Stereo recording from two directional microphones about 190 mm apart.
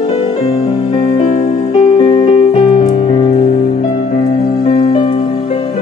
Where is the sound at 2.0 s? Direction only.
25° left (ahead or behind).